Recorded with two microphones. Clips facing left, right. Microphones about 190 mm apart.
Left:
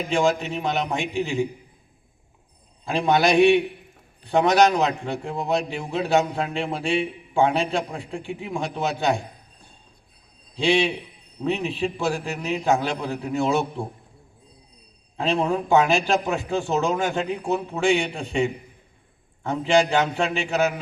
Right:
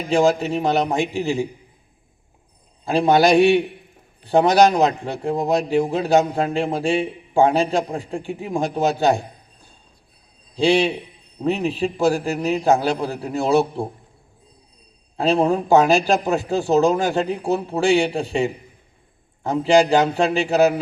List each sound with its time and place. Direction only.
0.1 s a man's voice: 35° right (ahead or behind)
2.8 s a man's voice: 35° right (ahead or behind)
10.6 s a man's voice: 35° right (ahead or behind)
15.1 s a man's voice: 35° right (ahead or behind)